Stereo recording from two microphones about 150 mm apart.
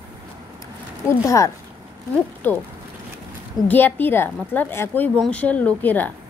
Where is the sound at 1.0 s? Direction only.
20° left (ahead or behind).